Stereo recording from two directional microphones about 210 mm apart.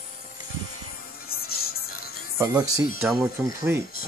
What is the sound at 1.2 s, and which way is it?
Music, 45° left (ahead or behind).